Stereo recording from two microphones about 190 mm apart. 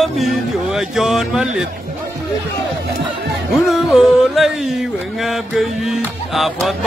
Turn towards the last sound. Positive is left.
turn(degrees=0)  # may be behind; listen again after turning